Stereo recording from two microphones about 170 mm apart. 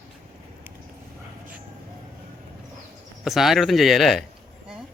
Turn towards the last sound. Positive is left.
turn(degrees=0)  # may be behind; listen again after turning